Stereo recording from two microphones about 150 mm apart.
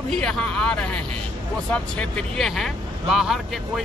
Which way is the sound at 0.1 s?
5° left (ahead or behind).